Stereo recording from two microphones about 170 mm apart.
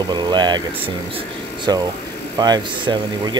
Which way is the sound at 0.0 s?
25° right (ahead or behind).